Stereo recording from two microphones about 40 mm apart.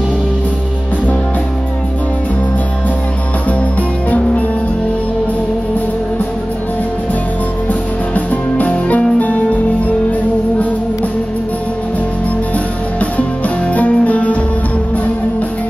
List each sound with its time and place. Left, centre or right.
8.1 s music: left
13.0 s music: left